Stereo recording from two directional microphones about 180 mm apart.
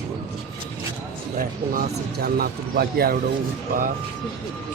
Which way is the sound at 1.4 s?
55° right (ahead or behind).